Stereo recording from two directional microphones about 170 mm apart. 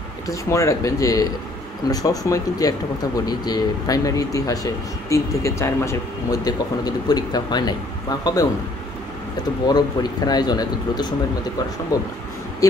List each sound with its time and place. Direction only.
0.3 s speech: 20° left (ahead or behind)
9.7 s speech: 25° left (ahead or behind)